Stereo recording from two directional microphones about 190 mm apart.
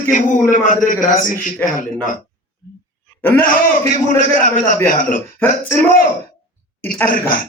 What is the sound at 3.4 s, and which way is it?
A man's voice, 45° left (ahead or behind).